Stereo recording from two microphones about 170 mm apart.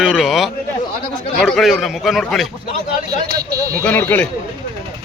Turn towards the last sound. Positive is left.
turn(degrees=10)  # may be behind; listen again after turning